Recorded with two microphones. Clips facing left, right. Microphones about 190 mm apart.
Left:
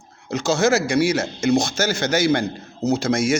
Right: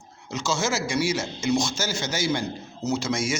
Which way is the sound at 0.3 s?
60° left (ahead or behind).